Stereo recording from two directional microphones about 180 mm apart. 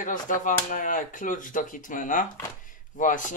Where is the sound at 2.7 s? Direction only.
45° left (ahead or behind).